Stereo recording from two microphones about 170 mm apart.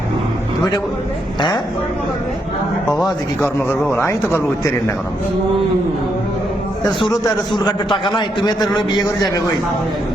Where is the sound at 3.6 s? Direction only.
15° left (ahead or behind).